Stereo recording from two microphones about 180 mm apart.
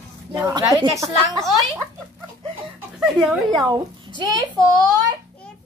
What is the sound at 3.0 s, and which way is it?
Speech, centre (ahead or behind).